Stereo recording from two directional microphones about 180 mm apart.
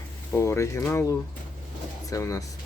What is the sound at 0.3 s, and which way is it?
Speech, 15° left (ahead or behind).